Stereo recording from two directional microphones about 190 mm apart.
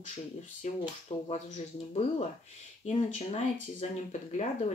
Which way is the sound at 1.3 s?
35° left (ahead or behind).